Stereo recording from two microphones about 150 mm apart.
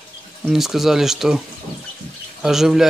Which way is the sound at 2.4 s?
Centre (ahead or behind).